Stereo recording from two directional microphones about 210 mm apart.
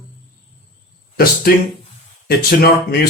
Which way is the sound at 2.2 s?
45° left (ahead or behind).